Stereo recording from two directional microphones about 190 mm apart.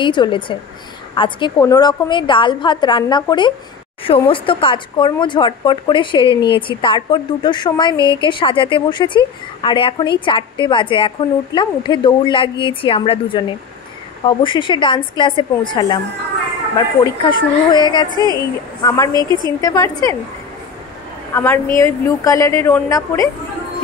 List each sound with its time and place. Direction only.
0.0 s a woman's voice: 25° left (ahead or behind)
21.3 s a woman's voice: 15° left (ahead or behind)